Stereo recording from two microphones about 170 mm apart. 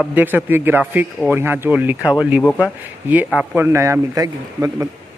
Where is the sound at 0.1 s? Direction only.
10° right (ahead or behind).